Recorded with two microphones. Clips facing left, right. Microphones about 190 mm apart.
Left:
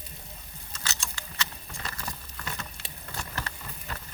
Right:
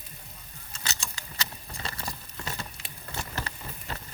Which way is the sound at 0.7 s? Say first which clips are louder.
Even; 35° right (ahead or behind).